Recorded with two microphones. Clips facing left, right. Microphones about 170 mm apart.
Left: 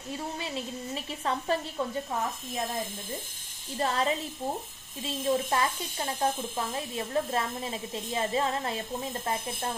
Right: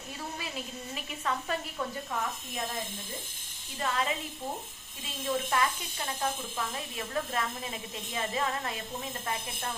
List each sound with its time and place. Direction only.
0.3 s speech: 30° left (ahead or behind)
3.8 s speech: 35° left (ahead or behind)
5.2 s a woman's voice: 30° left (ahead or behind)